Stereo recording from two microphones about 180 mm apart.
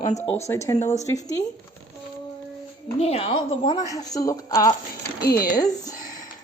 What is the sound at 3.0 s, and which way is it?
Speech, 35° left (ahead or behind).